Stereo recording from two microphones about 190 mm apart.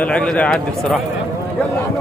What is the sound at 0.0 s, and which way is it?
Speech, 5° left (ahead or behind).